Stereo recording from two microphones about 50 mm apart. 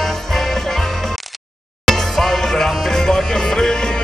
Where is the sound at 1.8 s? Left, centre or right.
Centre.